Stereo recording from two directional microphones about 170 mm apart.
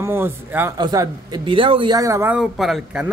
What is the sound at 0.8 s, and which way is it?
A man's voice, 25° right (ahead or behind).